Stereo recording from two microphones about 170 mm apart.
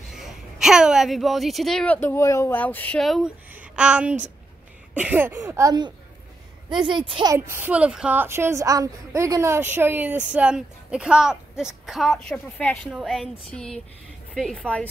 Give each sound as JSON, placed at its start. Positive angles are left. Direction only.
{"t": 0.1, "sound": "a woman's voice", "side_deg": -5}
{"t": 3.0, "sound": "a woman's voice", "side_deg": 0}
{"t": 7.3, "sound": "a woman's voice", "side_deg": -15}